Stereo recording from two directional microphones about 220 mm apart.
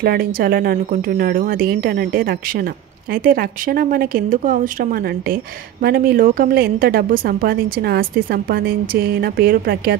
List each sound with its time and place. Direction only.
0.0 s a woman's voice: 45° right (ahead or behind)